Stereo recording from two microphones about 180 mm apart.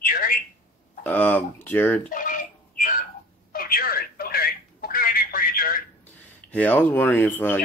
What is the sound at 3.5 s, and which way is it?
Telephone, 55° left (ahead or behind).